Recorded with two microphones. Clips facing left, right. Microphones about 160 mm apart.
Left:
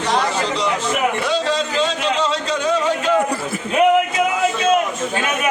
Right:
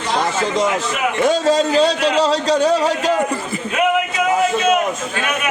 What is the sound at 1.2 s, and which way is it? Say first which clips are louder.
Speech: right 5 dB; 45° right (ahead or behind).